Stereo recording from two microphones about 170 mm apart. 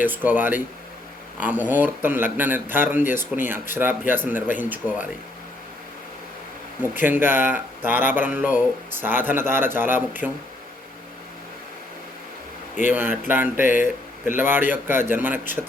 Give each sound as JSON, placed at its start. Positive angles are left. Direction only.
{"t": 0.0, "sound": "speech", "side_deg": -10}
{"t": 7.0, "sound": "speech", "side_deg": -10}
{"t": 12.9, "sound": "speech", "side_deg": -10}
{"t": 13.7, "sound": "speech", "side_deg": 50}
{"t": 14.3, "sound": "speech", "side_deg": -10}